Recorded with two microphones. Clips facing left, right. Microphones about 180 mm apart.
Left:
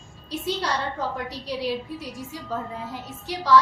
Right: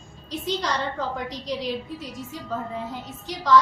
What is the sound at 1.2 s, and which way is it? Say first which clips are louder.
Speech: even; 10° left (ahead or behind).